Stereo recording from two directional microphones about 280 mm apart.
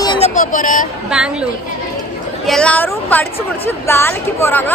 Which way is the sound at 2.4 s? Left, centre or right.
Centre.